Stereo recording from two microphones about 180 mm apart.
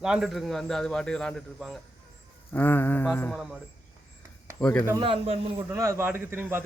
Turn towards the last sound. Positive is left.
turn(degrees=-10)  # may be behind; listen again after turning